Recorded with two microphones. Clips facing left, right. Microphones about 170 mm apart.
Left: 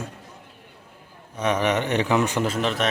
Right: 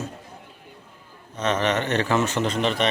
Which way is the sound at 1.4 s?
10° left (ahead or behind).